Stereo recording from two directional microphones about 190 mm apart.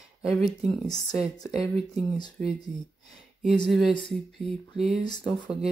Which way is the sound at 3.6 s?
Centre (ahead or behind).